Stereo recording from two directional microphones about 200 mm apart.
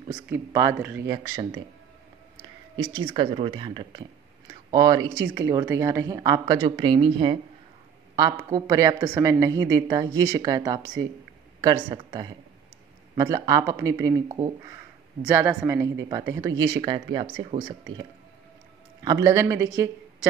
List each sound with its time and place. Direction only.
0.1 s a woman's voice: 20° right (ahead or behind)
1.1 s speech: 20° right (ahead or behind)
3.0 s a woman's voice: 25° right (ahead or behind)
19.0 s a woman's voice: 15° right (ahead or behind)